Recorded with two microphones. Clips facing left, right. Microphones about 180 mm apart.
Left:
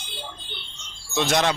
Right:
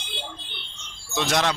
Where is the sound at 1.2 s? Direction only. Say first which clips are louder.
Left 2 dB; centre (ahead or behind).